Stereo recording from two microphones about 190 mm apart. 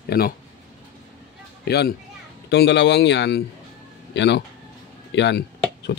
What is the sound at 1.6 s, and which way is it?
Speech, 60° left (ahead or behind).